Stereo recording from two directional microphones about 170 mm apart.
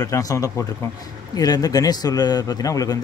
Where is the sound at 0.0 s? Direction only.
20° left (ahead or behind).